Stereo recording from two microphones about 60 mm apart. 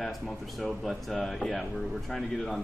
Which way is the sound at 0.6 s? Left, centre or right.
Centre.